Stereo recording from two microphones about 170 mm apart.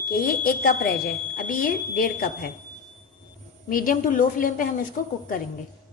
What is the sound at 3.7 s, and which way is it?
A woman's voice, 55° left (ahead or behind).